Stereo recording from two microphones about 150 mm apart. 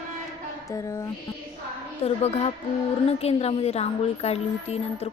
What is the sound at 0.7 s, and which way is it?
Music, 20° left (ahead or behind).